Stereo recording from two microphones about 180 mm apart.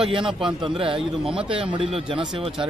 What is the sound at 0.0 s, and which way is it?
Speech, 25° right (ahead or behind).